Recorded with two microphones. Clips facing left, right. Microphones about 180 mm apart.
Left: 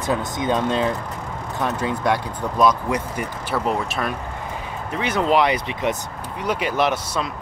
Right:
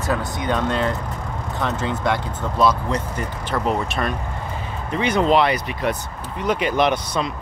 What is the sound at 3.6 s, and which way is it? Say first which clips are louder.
Speech: right 2 dB; centre (ahead or behind).